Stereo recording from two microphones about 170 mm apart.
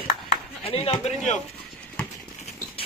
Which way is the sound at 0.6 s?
35° left (ahead or behind).